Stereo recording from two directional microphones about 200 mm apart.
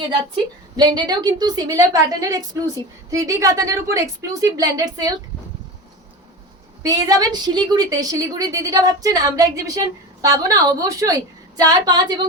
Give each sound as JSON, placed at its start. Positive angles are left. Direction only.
{"t": 0.8, "sound": "a woman's voice", "side_deg": -20}
{"t": 6.8, "sound": "a woman's voice", "side_deg": -20}